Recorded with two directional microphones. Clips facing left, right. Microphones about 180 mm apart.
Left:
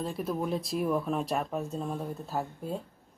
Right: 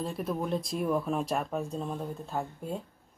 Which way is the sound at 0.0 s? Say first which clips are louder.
Left 1 dB; centre (ahead or behind).